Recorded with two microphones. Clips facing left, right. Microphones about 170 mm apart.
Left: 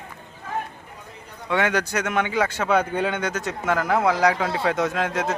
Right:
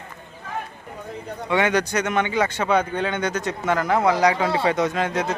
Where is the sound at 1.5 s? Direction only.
Centre (ahead or behind).